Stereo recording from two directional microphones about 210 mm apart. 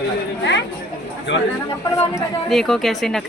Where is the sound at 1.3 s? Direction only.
60° left (ahead or behind).